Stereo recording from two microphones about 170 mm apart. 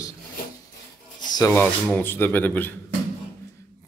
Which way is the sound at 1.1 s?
25° left (ahead or behind).